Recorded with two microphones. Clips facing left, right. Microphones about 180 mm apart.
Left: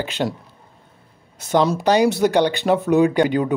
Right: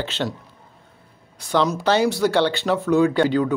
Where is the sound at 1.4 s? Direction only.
20° left (ahead or behind).